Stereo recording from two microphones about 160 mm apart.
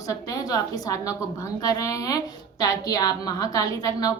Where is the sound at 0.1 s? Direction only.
25° left (ahead or behind).